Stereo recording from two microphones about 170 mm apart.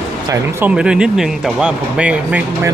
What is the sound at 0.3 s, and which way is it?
Speech, 10° right (ahead or behind).